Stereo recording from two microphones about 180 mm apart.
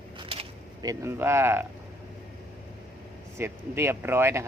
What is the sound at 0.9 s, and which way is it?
Speech, 15° right (ahead or behind).